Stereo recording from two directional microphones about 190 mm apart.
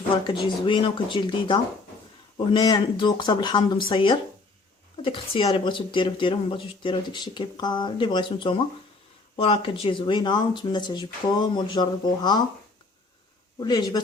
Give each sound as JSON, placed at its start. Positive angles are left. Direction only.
{"t": 0.4, "sound": "speech", "side_deg": 25}
{"t": 13.6, "sound": "speech", "side_deg": 20}